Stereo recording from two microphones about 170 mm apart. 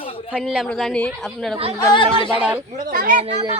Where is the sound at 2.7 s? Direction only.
50° right (ahead or behind).